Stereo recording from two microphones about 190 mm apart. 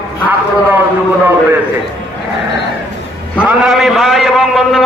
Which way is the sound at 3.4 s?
Centre (ahead or behind).